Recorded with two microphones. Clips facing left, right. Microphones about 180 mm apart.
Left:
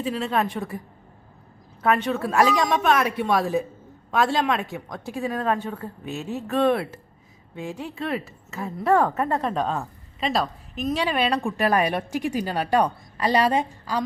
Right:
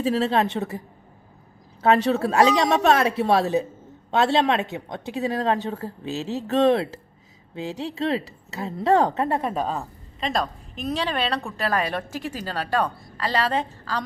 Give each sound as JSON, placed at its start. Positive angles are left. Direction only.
{"t": 0.0, "sound": "a woman's voice", "side_deg": -35}
{"t": 2.0, "sound": "a woman's voice", "side_deg": -30}
{"t": 9.3, "sound": "a woman's voice", "side_deg": -10}